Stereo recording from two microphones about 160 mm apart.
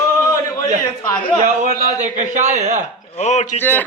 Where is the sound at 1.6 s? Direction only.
50° right (ahead or behind).